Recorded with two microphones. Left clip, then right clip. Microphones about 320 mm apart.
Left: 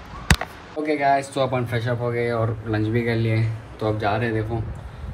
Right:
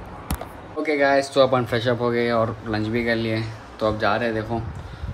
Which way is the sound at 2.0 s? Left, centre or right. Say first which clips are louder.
Right 3 dB; centre.